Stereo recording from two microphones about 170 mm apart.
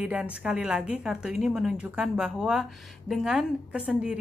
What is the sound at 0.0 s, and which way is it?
A woman's voice, 5° right (ahead or behind).